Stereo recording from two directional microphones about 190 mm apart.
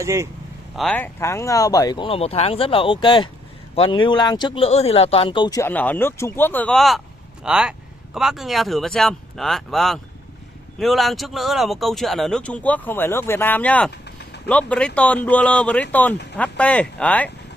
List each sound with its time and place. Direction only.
0.0 s speech: 15° right (ahead or behind)
0.7 s speech: 5° left (ahead or behind); by 5.6 s 25° left (ahead or behind)
5.6 s speech: 10° left (ahead or behind)